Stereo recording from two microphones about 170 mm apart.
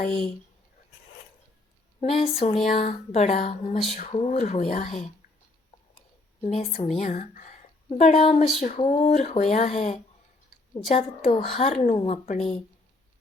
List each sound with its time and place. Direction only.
2.0 s speech: 35° left (ahead or behind)
6.4 s a woman's voice: 40° left (ahead or behind)